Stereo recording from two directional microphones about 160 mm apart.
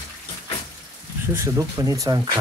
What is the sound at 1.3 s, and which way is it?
Speech, 20° right (ahead or behind).